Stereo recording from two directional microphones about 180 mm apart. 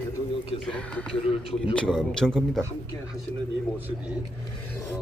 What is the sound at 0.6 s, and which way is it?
A man's voice, 5° left (ahead or behind).